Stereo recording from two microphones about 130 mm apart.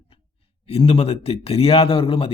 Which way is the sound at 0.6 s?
45° left (ahead or behind).